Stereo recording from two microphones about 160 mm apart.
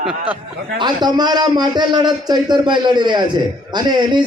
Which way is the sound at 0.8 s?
25° right (ahead or behind).